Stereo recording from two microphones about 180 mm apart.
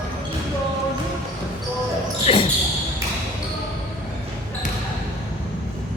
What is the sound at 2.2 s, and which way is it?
Basketball bounce, 30° left (ahead or behind).